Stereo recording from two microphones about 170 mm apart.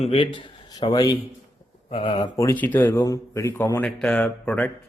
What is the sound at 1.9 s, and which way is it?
Speech, 35° left (ahead or behind).